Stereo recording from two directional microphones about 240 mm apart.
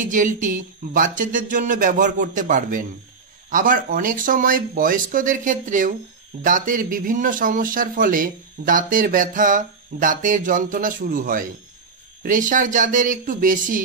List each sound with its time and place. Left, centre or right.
0.0 s speech: right